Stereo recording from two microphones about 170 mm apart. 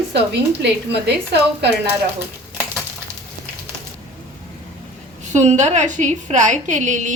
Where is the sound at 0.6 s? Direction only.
80° right.